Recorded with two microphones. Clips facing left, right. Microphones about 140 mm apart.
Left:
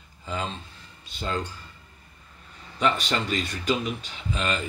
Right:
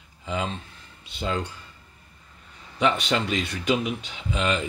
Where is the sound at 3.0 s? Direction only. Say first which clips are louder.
Right 2 dB; 15° right (ahead or behind).